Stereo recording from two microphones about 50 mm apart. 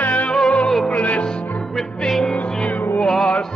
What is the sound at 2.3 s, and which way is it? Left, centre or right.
Music, left.